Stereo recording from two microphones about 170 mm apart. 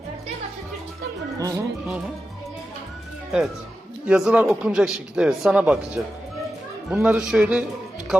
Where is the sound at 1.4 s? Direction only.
20° right (ahead or behind).